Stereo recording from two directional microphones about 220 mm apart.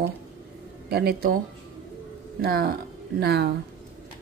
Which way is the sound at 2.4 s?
45° right (ahead or behind).